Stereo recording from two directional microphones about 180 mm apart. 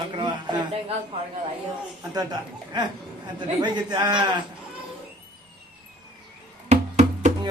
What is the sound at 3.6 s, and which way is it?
Speech, 25° right (ahead or behind).